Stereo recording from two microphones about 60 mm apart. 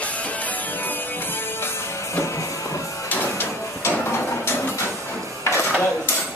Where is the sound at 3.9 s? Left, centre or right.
Left.